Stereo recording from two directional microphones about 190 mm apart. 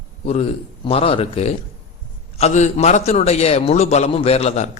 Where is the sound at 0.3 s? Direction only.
35° left (ahead or behind).